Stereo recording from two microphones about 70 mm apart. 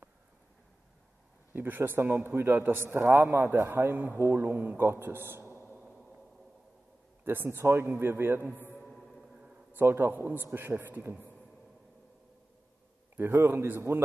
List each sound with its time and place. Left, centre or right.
1.5 s a man's voice: right
7.2 s a man's voice: right
8.8 s music: centre
9.3 s a sound: centre
9.7 s a man's voice: right
13.4 s a man's voice: right